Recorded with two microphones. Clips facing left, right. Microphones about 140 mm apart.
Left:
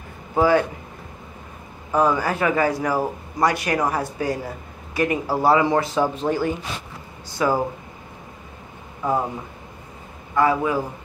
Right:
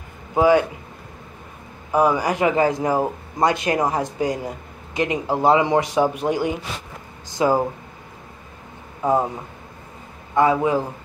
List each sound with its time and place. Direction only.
0.3 s a man's voice: 15° right (ahead or behind)
1.9 s a man's voice: 10° right (ahead or behind)
10.3 s a man's voice: 20° right (ahead or behind)